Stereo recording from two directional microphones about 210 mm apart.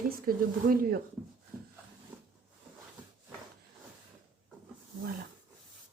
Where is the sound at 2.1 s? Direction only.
5° right (ahead or behind).